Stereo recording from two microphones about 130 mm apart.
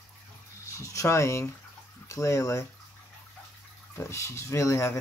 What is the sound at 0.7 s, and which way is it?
Speech, 25° left (ahead or behind).